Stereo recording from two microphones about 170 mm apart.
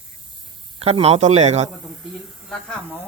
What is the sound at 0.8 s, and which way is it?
Speech, 35° right (ahead or behind).